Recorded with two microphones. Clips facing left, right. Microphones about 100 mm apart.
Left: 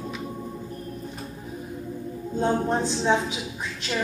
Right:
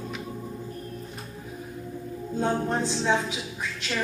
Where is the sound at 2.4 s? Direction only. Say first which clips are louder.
Left 2 dB; 20° left (ahead or behind).